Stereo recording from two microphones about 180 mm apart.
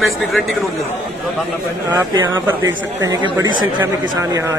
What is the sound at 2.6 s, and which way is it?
A woman's voice, 20° right (ahead or behind).